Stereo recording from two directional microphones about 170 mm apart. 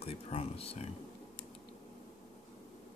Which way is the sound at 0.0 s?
35° left (ahead or behind).